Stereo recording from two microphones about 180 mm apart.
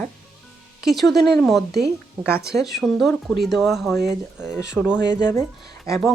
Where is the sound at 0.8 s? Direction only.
Centre (ahead or behind).